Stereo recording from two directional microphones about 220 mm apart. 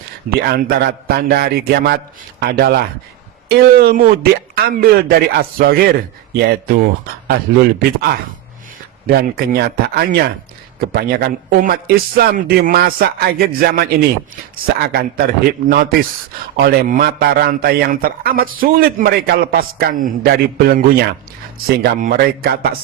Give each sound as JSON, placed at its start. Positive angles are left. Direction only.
{"t": 0.3, "sound": "a man's voice", "side_deg": -45}
{"t": 15.6, "sound": "a man's voice", "side_deg": -40}